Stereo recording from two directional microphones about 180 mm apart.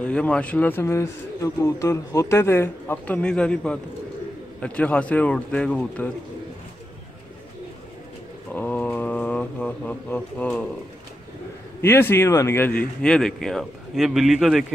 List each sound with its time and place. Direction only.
0.0 s a man's voice: 5° left (ahead or behind)
8.5 s mantra: 10° left (ahead or behind)
11.8 s speech: 10° left (ahead or behind)